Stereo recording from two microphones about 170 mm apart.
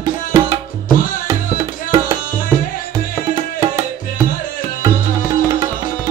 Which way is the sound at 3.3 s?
20° right (ahead or behind).